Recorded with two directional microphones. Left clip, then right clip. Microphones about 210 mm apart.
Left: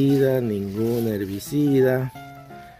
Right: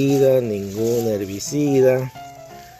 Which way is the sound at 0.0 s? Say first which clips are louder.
Right 4 dB; 15° left (ahead or behind).